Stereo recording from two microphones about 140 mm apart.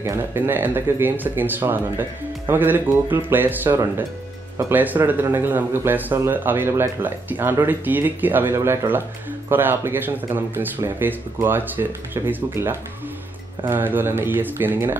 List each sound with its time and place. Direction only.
0.0 s speech: 20° right (ahead or behind)